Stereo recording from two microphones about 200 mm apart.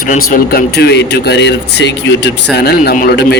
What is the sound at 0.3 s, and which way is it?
Speech, 50° left (ahead or behind).